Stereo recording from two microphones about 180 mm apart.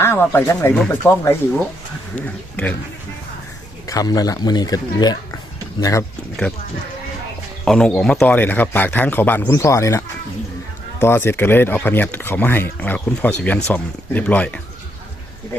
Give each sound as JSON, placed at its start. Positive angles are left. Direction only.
{"t": 0.0, "sound": "speech", "side_deg": 15}
{"t": 3.8, "sound": "speech", "side_deg": 20}
{"t": 7.6, "sound": "speech", "side_deg": 5}
{"t": 11.0, "sound": "speech", "side_deg": 15}